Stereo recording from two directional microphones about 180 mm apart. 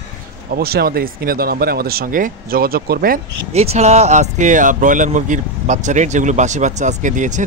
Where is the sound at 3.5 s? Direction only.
35° right (ahead or behind).